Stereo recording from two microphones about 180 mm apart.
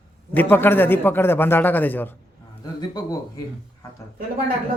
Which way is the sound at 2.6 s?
20° left (ahead or behind).